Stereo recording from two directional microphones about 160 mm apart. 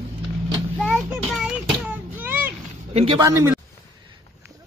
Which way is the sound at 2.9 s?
40° right (ahead or behind).